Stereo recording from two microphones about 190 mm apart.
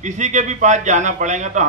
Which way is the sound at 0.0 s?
40° right (ahead or behind).